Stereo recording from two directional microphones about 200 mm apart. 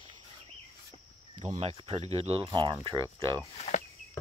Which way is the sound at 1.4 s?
35° right (ahead or behind).